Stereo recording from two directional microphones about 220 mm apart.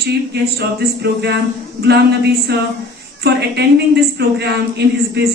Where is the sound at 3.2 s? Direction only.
50° right (ahead or behind).